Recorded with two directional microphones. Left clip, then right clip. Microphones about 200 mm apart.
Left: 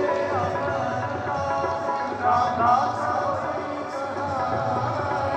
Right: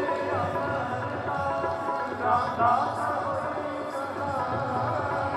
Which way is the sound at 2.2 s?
60° right (ahead or behind).